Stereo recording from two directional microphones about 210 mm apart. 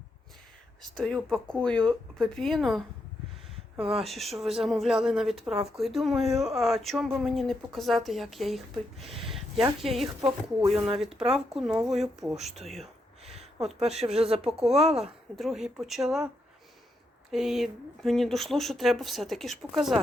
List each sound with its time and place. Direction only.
0.8 s a woman's voice: centre (ahead or behind)
10.2 s speech: 20° right (ahead or behind)
11.3 s a woman's voice: centre (ahead or behind)
13.8 s speech: 30° right (ahead or behind)
14.4 s a woman's voice: centre (ahead or behind)
14.8 s speech: 30° right (ahead or behind)
15.4 s a woman's voice: centre (ahead or behind)
17.3 s a woman's voice: centre (ahead or behind)